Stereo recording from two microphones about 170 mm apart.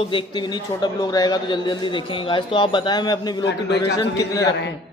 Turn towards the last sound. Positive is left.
turn(degrees=20)  # may be behind; listen again after turning